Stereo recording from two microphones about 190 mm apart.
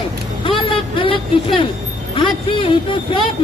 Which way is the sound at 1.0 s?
30° left (ahead or behind).